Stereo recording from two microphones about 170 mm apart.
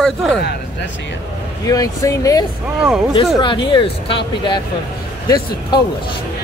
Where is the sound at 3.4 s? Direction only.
30° left (ahead or behind).